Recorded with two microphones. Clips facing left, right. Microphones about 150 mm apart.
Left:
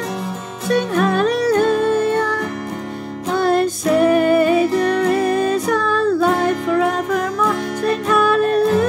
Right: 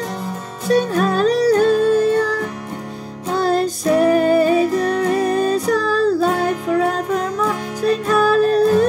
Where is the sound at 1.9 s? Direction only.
35° right (ahead or behind).